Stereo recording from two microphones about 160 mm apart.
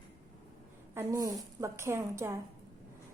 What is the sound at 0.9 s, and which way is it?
A woman's voice, 20° right (ahead or behind).